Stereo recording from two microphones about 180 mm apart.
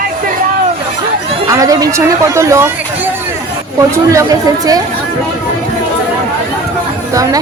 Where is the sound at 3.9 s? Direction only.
20° right (ahead or behind).